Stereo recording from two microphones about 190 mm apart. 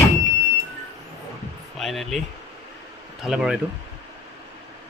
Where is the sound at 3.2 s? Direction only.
5° right (ahead or behind).